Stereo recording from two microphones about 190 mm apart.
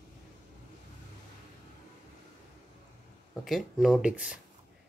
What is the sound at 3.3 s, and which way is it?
Speech, centre (ahead or behind).